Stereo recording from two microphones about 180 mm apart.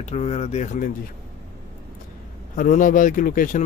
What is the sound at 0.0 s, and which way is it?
Speech, 40° left (ahead or behind).